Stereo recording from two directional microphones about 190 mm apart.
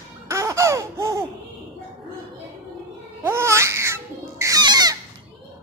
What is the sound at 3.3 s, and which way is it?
Laughter, 15° right (ahead or behind).